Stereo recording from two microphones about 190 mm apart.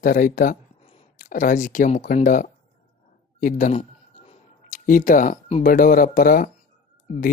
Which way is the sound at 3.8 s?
35° left (ahead or behind).